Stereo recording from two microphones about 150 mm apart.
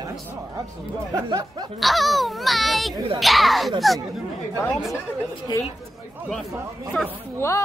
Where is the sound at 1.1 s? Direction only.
25° right (ahead or behind).